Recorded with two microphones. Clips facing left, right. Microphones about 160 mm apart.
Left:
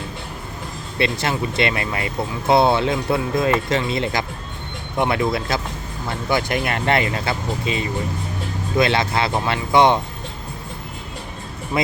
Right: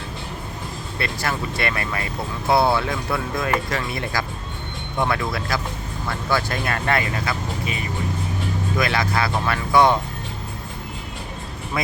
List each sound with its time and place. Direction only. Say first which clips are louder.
0.9 s speech: left 5 dB; 20° left (ahead or behind)